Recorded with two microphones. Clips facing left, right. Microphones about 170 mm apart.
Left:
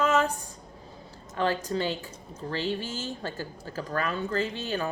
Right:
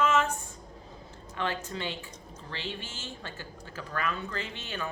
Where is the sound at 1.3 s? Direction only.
35° left (ahead or behind).